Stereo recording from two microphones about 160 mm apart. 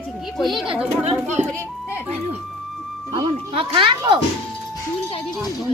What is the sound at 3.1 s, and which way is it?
Speech, 30° right (ahead or behind).